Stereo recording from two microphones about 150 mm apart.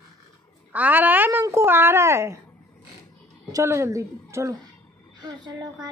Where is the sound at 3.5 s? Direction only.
20° right (ahead or behind).